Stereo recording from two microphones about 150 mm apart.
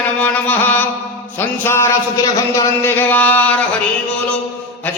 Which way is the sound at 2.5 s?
15° left (ahead or behind).